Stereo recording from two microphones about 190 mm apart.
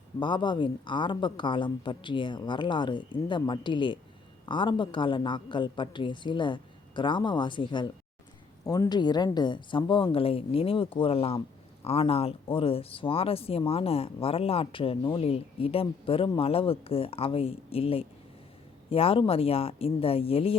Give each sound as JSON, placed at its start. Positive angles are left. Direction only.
{"t": 0.2, "sound": "a woman's voice", "side_deg": 25}